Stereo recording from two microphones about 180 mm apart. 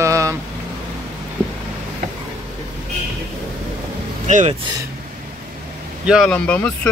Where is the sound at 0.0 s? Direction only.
15° right (ahead or behind).